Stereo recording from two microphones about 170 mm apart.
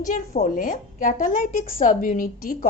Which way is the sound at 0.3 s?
50° left (ahead or behind).